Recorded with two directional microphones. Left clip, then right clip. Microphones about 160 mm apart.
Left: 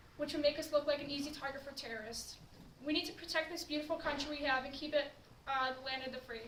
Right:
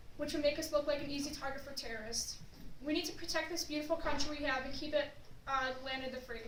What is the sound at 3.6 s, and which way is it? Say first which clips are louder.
A woman's voice: right 1 dB; 5° left (ahead or behind).